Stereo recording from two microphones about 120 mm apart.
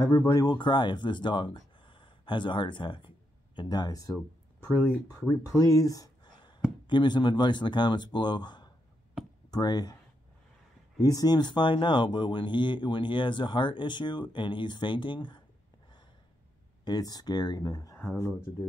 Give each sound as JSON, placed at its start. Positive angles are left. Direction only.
{"t": 0.0, "sound": "speech", "side_deg": 25}
{"t": 1.8, "sound": "gasp", "side_deg": 45}
{"t": 3.5, "sound": "speech", "side_deg": 35}
{"t": 4.7, "sound": "speech", "side_deg": 10}
{"t": 5.2, "sound": "speech", "side_deg": 20}
{"t": 11.0, "sound": "speech", "side_deg": 30}
{"t": 16.8, "sound": "speech", "side_deg": 35}